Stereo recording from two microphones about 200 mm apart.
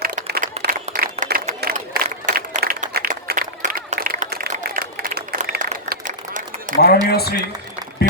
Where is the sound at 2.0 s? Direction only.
40° right (ahead or behind).